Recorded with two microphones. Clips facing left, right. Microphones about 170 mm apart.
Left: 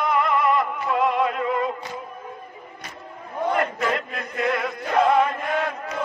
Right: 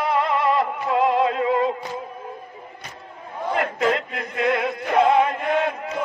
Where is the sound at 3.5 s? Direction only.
25° right (ahead or behind).